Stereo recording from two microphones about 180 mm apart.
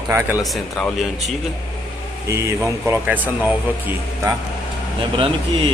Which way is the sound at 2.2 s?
15° right (ahead or behind).